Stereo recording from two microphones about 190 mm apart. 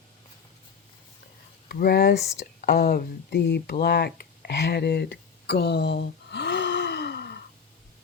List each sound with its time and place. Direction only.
1.6 s speech: 50° left (ahead or behind)